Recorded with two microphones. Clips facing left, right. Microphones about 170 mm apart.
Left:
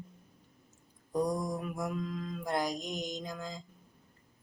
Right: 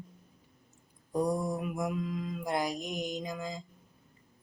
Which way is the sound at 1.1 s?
10° right (ahead or behind).